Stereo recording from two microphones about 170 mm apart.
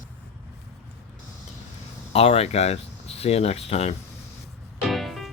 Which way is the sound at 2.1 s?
35° left (ahead or behind).